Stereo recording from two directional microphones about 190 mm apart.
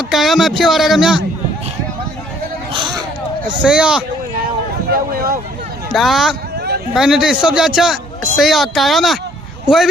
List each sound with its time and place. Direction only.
0.1 s speech: centre (ahead or behind)
2.7 s a sound: 25° right (ahead or behind)
3.6 s speech: 5° right (ahead or behind)
4.9 s vehicle: 50° right (ahead or behind)
5.9 s speech: centre (ahead or behind)